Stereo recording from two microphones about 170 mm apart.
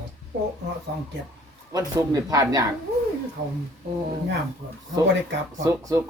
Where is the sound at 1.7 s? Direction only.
20° right (ahead or behind).